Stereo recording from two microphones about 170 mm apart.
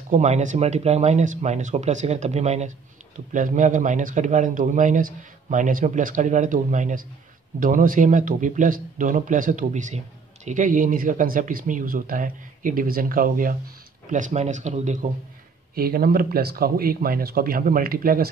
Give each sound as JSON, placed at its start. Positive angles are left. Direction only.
{"t": 0.1, "sound": "speech", "side_deg": -45}
{"t": 15.7, "sound": "speech", "side_deg": -60}